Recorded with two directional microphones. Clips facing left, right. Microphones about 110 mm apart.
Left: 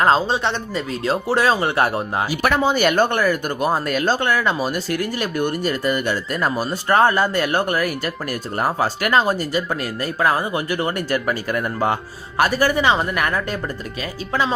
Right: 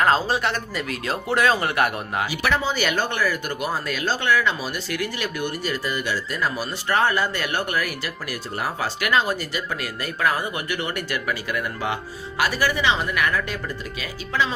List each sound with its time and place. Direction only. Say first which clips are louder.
0.0 s speech: left 3 dB; 25° left (ahead or behind)
2.4 s speech: left 7 dB; 50° left (ahead or behind)